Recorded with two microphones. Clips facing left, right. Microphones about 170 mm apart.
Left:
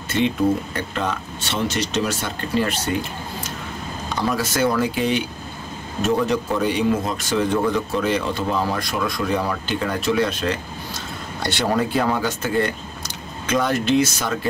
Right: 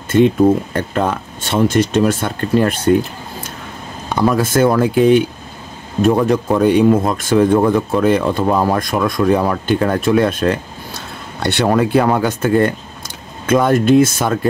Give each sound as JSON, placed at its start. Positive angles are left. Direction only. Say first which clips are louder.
{"t": 0.1, "sound": "speech", "louder": "right 8 dB", "side_deg": -50}
{"t": 4.1, "sound": "speech", "louder": "right 8 dB", "side_deg": -50}